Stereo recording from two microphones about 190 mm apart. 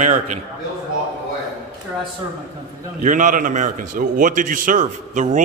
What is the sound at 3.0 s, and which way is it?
A man's voice, 45° right (ahead or behind).